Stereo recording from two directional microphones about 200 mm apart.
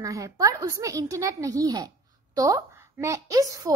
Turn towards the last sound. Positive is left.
turn(degrees=-15)  # may be behind; listen again after turning